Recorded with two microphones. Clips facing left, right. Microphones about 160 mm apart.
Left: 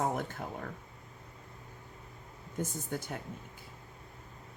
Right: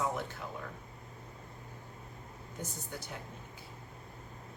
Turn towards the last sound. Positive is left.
turn(degrees=50)  # may be behind; listen again after turning